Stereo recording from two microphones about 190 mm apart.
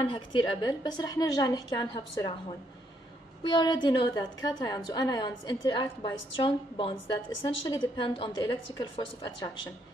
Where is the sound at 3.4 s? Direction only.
25° left (ahead or behind).